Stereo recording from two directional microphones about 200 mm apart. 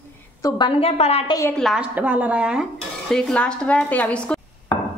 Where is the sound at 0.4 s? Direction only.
20° left (ahead or behind).